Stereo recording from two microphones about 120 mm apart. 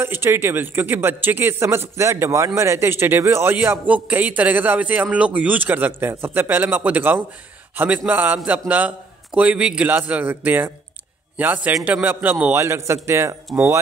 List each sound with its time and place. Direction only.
0.0 s a man's voice: 20° right (ahead or behind)